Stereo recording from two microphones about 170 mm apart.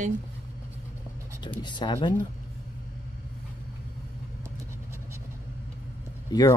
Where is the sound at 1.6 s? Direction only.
25° left (ahead or behind).